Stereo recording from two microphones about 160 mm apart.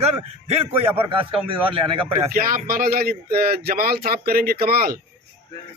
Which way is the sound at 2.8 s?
70° right (ahead or behind).